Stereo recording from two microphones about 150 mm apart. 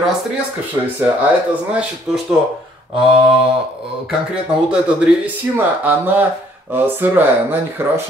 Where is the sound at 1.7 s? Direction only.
5° right (ahead or behind).